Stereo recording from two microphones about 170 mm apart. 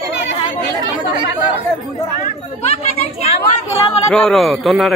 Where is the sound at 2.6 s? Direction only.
35° left (ahead or behind).